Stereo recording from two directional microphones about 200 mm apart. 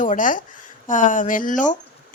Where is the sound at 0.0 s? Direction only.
40° left (ahead or behind).